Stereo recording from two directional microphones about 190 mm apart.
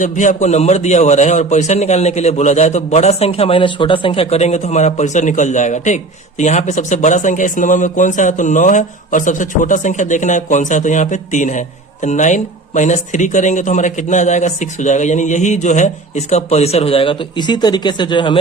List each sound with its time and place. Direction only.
0.0 s speech: 40° left (ahead or behind); by 18.3 s 25° left (ahead or behind)